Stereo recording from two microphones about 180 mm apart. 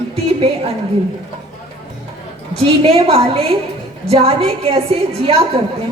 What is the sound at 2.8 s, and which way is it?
A woman's voice, 35° right (ahead or behind).